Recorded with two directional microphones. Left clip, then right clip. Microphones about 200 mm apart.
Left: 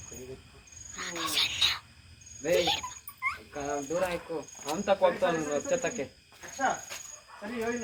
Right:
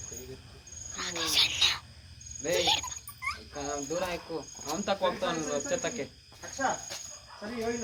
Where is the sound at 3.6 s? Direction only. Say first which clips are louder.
Left 3 dB; 40° left (ahead or behind).